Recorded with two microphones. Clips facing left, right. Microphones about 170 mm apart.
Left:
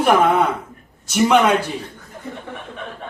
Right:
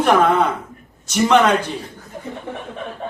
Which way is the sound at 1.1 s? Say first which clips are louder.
Even; 5° left (ahead or behind).